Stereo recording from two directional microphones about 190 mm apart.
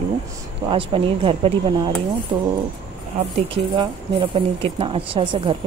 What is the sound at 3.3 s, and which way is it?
Speech, 30° right (ahead or behind).